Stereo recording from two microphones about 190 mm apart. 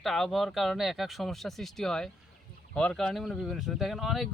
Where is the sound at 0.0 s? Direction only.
Centre (ahead or behind).